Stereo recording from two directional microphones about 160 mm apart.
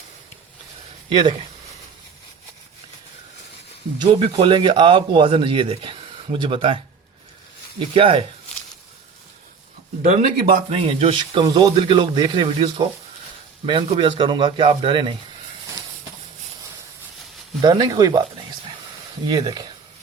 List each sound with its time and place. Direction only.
1.1 s speech: 30° right (ahead or behind)
4.1 s speech: 35° right (ahead or behind)
7.8 s speech: 35° right (ahead or behind)
10.0 s speech: 55° right (ahead or behind)
10.8 s speech: 35° right (ahead or behind)
17.6 s speech: 25° right (ahead or behind)
19.3 s speech: 25° right (ahead or behind)